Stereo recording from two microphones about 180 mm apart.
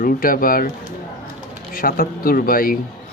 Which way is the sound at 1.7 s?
55° left (ahead or behind).